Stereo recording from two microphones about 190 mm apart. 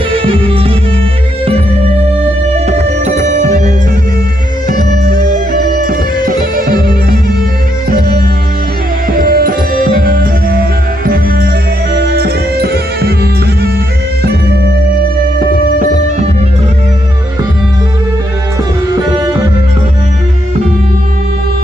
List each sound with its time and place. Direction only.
0.1 s music: 30° right (ahead or behind)
2.6 s music: 35° right (ahead or behind)
5.0 s music: 50° right (ahead or behind)
9.0 s music: 50° right (ahead or behind)
18.9 s music: 20° right (ahead or behind)